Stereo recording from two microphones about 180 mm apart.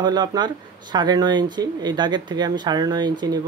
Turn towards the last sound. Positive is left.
turn(degrees=-25)  # may be behind; listen again after turning